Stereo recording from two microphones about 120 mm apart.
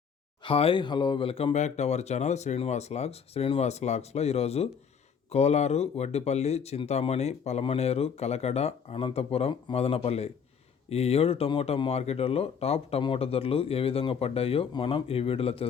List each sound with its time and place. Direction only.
0.4 s speech: 50° left (ahead or behind)
1.5 s speech: 70° left (ahead or behind); by 15.6 s 55° left (ahead or behind)